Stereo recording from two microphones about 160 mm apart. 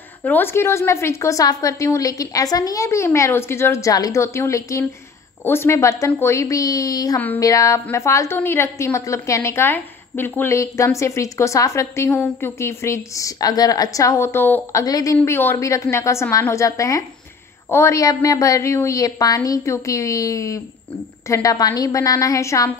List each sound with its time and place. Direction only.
0.2 s a woman's voice: 10° left (ahead or behind)
7.2 s a woman's voice: 10° left (ahead or behind)